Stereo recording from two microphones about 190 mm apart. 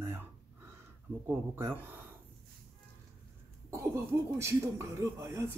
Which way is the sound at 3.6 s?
15° right (ahead or behind).